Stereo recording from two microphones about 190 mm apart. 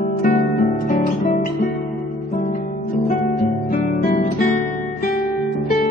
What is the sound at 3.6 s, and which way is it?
Music, 50° left (ahead or behind).